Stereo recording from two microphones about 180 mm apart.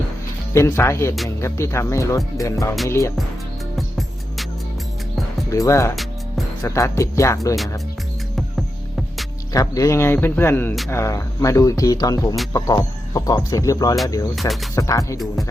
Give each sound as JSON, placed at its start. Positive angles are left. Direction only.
{"t": 0.5, "sound": "speech", "side_deg": 15}
{"t": 3.8, "sound": "music", "side_deg": 0}
{"t": 5.5, "sound": "speech", "side_deg": 15}
{"t": 8.4, "sound": "music", "side_deg": 0}
{"t": 9.5, "sound": "speech", "side_deg": 20}
{"t": 14.3, "sound": "speech", "side_deg": 0}
{"t": 14.8, "sound": "speech", "side_deg": 15}